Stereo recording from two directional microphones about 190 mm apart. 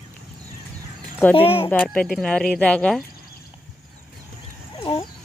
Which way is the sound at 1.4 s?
30° left (ahead or behind).